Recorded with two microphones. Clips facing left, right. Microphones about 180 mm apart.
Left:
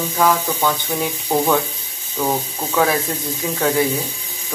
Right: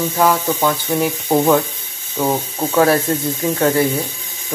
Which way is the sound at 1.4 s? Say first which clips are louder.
Right 3 dB; 40° right (ahead or behind).